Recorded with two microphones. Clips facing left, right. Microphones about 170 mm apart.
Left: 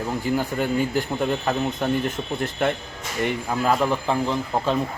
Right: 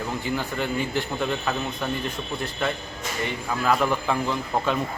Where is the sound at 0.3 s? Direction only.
45° left (ahead or behind).